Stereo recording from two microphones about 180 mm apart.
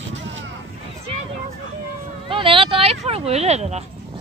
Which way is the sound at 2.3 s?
30° right (ahead or behind).